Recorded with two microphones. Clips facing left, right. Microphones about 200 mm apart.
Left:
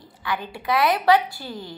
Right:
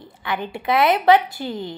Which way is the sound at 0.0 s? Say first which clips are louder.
Right 2 dB; 25° right (ahead or behind).